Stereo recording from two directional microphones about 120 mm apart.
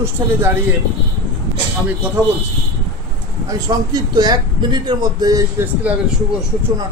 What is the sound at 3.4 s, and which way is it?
A man's voice, 30° right (ahead or behind).